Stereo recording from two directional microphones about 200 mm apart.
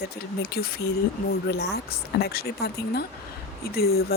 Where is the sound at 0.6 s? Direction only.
55° left (ahead or behind).